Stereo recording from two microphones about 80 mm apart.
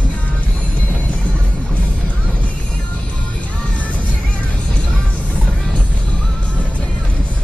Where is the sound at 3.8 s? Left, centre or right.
Centre.